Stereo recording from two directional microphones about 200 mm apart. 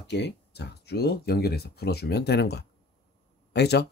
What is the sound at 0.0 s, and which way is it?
Speech, 55° left (ahead or behind).